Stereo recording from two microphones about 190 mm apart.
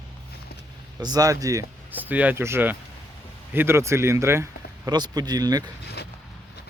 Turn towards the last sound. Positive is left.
turn(degrees=-20)  # may be behind; listen again after turning